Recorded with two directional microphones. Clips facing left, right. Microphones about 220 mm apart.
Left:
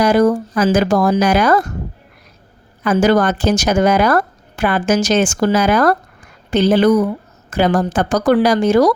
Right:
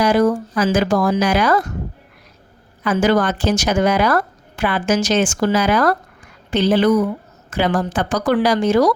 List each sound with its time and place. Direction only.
0.0 s a woman's voice: 40° left (ahead or behind)
2.8 s a woman's voice: 40° left (ahead or behind)